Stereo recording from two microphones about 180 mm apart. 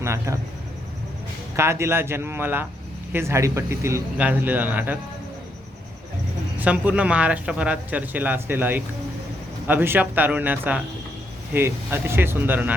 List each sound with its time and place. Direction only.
0.0 s speech: 15° right (ahead or behind)
1.5 s speech: 15° right (ahead or behind)
6.6 s speech: 10° right (ahead or behind)